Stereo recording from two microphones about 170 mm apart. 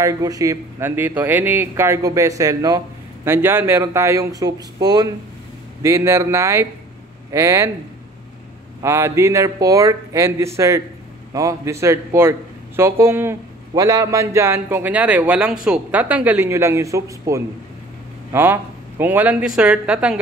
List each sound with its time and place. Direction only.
0.0 s a man's voice: 20° right (ahead or behind)
8.8 s a man's voice: 15° right (ahead or behind)